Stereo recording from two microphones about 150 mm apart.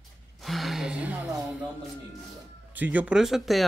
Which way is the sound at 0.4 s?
Centre (ahead or behind).